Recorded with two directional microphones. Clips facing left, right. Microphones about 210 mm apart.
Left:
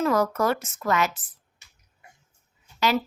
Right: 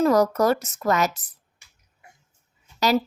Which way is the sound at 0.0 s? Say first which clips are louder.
Right 4 dB; 40° right (ahead or behind).